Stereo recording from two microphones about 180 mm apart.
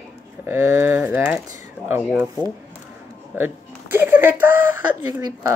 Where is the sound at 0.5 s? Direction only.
15° right (ahead or behind).